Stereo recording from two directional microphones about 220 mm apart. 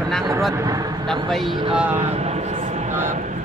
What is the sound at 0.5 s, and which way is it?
Speech, 15° right (ahead or behind).